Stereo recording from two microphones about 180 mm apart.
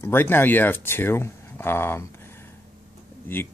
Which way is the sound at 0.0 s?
10° left (ahead or behind).